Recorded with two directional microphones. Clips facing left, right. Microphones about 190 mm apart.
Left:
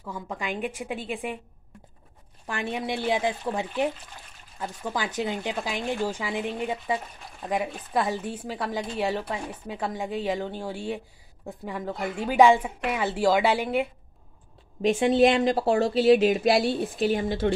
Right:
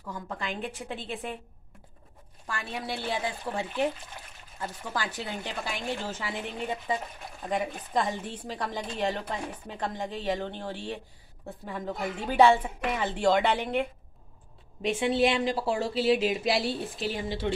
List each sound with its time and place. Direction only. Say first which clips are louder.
0.1 s speech: left 3 dB; 10° left (ahead or behind)
2.4 s speech: left 5 dB; 20° left (ahead or behind)
14.8 s speech: left 5 dB; 40° left (ahead or behind)